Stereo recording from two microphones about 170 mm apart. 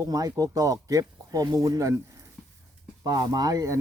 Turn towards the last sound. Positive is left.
turn(degrees=-20)  # may be behind; listen again after turning